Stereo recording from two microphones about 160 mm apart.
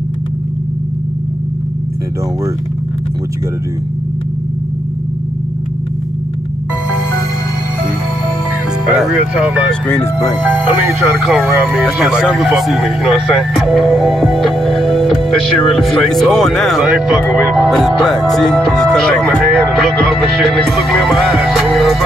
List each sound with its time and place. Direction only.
8.9 s speech: 5° right (ahead or behind)
11.2 s speech: centre (ahead or behind)
20.5 s music: centre (ahead or behind)